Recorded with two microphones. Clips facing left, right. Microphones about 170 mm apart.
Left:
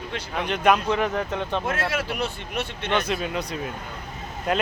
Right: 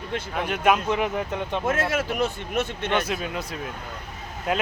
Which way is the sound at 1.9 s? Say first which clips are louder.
Right 3 dB; 45° right (ahead or behind).